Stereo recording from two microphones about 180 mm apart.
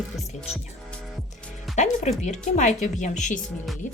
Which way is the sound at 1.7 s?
40° left (ahead or behind).